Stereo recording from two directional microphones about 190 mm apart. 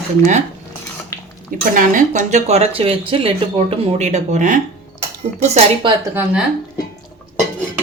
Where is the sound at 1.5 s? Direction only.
45° right (ahead or behind).